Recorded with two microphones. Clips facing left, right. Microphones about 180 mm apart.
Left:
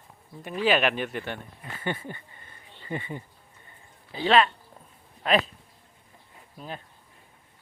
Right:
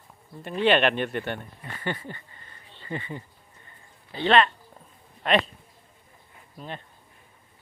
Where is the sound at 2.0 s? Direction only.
15° left (ahead or behind).